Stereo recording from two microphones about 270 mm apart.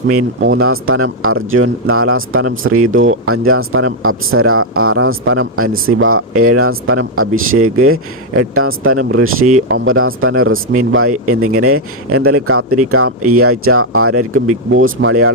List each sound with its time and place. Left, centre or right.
0.4 s speech: right